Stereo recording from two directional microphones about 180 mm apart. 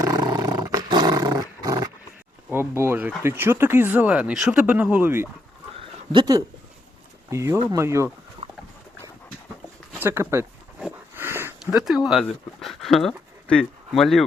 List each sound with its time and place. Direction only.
0.0 s roar: 20° right (ahead or behind)
2.5 s speech: 15° right (ahead or behind)
6.1 s speech: 25° right (ahead or behind)
8.4 s dog: 35° right (ahead or behind)
10.0 s speech: 10° right (ahead or behind)
10.8 s a sound: 10° right (ahead or behind)
11.6 s speech: centre (ahead or behind)